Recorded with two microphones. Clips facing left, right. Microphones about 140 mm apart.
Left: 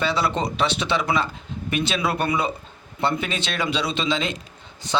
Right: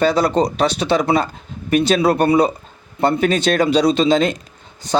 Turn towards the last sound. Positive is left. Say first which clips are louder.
# right 6 dB
turn(degrees=-40)  # may be behind; listen again after turning